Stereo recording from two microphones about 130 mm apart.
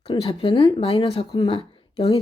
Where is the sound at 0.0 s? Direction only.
45° left (ahead or behind).